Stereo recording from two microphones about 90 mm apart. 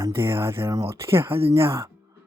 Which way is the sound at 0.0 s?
30° right (ahead or behind).